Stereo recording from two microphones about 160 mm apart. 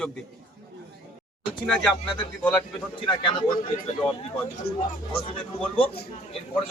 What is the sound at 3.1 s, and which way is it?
Speech, 25° left (ahead or behind).